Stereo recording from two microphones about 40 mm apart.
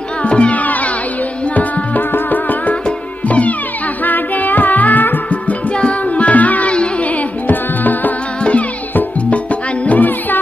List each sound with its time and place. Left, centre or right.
0.2 s music: left
0.6 s music: left
5.8 s music: left
9.3 s music: left